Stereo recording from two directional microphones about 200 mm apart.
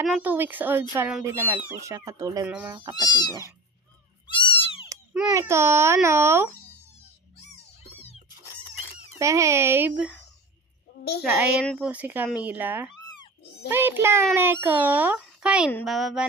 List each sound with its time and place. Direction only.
0.2 s speech: 10° right (ahead or behind)
2.9 s cat: 20° left (ahead or behind)
5.3 s speech: 15° right (ahead or behind)
9.1 s speech: 15° right (ahead or behind)
11.3 s a woman's voice: 5° right (ahead or behind)